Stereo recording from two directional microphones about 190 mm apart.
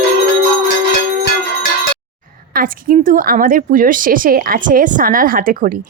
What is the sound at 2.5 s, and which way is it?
A woman's voice, 50° right (ahead or behind).